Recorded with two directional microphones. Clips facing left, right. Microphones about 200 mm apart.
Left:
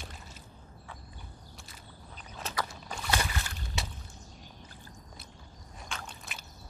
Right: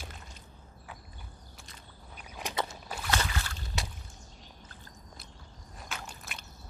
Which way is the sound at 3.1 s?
15° left (ahead or behind).